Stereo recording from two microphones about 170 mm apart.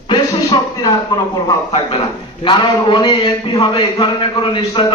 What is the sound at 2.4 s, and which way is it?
A man's voice, 30° left (ahead or behind).